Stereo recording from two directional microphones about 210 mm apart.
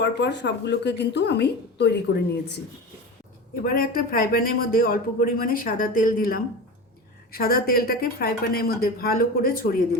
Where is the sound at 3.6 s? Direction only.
45° left (ahead or behind).